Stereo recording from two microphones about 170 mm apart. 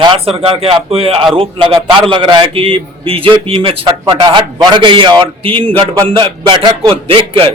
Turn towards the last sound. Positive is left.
turn(degrees=-30)  # may be behind; listen again after turning